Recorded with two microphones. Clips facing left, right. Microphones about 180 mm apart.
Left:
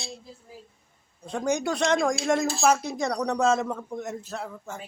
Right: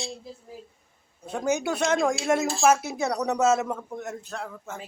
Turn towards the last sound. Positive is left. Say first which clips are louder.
# even
turn(degrees=0)  # may be behind; listen again after turning